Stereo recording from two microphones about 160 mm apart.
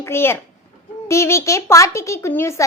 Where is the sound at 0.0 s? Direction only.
15° left (ahead or behind).